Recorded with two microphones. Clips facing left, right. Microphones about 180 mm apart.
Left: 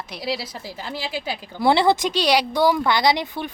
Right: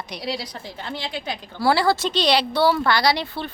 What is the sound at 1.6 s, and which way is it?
Speech, 20° left (ahead or behind).